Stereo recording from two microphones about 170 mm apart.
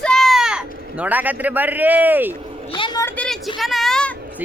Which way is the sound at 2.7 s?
30° left (ahead or behind).